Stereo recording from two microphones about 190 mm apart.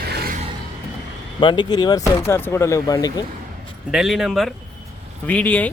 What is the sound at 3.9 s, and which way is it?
Speech, centre (ahead or behind).